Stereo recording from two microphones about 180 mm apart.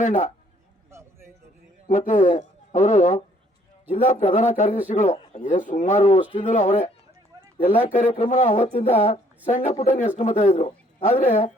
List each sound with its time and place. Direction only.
0.0 s speech: 40° left (ahead or behind)
0.9 s a sound: 15° right (ahead or behind)
1.9 s speech: 40° left (ahead or behind)
4.3 s speech: 40° left (ahead or behind)
5.4 s speech: 45° left (ahead or behind)